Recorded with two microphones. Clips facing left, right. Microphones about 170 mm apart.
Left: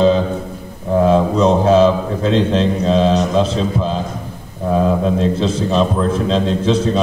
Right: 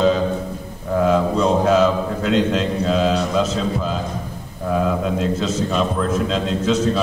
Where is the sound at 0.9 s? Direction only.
30° left (ahead or behind).